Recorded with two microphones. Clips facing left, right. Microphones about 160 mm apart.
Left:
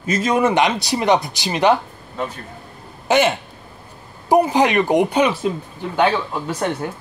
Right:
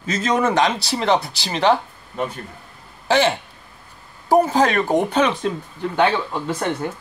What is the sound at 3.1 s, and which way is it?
Speech, 15° left (ahead or behind).